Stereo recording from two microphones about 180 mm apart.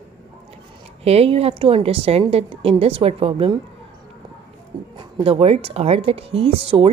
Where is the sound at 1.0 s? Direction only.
35° right (ahead or behind).